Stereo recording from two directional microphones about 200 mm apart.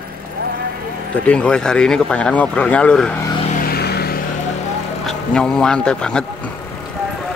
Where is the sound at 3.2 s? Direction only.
25° left (ahead or behind).